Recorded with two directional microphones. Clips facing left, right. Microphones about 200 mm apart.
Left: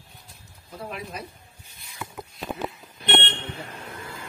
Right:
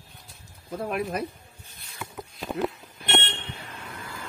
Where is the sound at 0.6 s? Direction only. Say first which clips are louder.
Right 7 dB; 55° right (ahead or behind).